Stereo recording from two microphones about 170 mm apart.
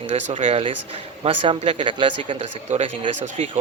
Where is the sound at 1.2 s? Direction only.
35° right (ahead or behind).